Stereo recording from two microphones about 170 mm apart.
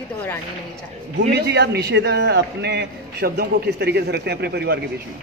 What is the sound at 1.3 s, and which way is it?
A man's voice, 80° right.